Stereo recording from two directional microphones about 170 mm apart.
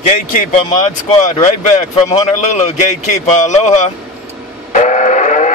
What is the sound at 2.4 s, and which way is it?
Speech, 40° left (ahead or behind).